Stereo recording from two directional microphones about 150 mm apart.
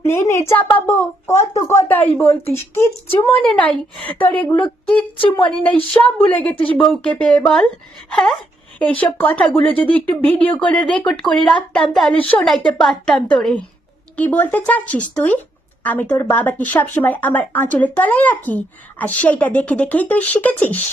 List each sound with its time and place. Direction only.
0.0 s speech: 20° left (ahead or behind)